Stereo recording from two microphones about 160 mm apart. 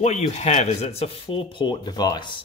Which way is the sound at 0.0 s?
40° left (ahead or behind).